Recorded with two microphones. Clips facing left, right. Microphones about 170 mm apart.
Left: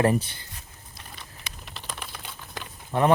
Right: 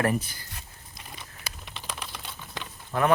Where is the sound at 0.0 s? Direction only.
30° left (ahead or behind).